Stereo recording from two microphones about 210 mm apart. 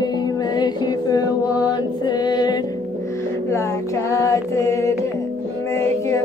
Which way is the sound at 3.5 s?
15° left (ahead or behind).